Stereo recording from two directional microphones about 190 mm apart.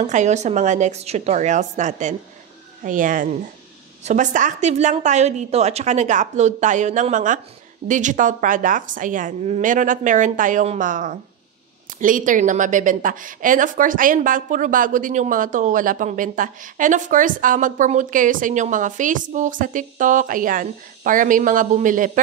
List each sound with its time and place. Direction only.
0.0 s a woman's voice: 40° right (ahead or behind)